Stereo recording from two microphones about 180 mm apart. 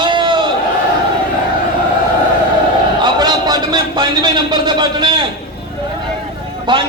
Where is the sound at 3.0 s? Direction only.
25° right (ahead or behind).